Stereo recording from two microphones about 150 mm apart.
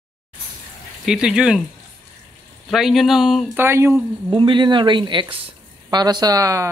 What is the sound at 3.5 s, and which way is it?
Speech, 15° right (ahead or behind).